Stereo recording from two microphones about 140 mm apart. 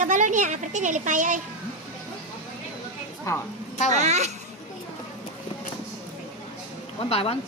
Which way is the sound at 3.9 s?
55° right (ahead or behind).